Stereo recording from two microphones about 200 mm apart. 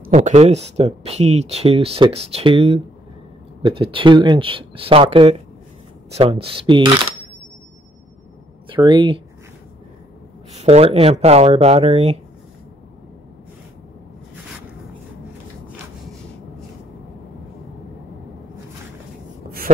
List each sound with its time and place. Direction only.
0.1 s speech: 35° right (ahead or behind)
8.6 s speech: 25° right (ahead or behind)
10.5 s speech: 35° right (ahead or behind)